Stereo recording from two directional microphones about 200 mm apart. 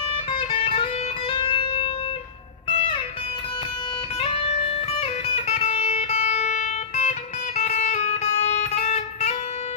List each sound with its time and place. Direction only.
0.3 s music: 25° left (ahead or behind)
4.2 s music: 30° left (ahead or behind)